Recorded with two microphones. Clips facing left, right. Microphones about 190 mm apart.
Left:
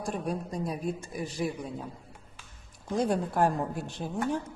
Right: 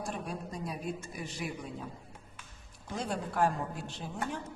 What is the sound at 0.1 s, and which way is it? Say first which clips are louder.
A woman's voice: left 6 dB; 40° left (ahead or behind).